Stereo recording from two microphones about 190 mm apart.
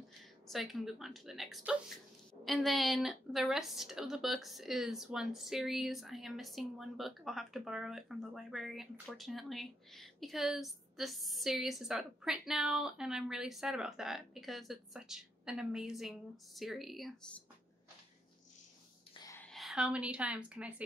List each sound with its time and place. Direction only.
0.5 s a woman's voice: centre (ahead or behind)
19.1 s a sound: 20° left (ahead or behind)
19.5 s a woman's voice: centre (ahead or behind)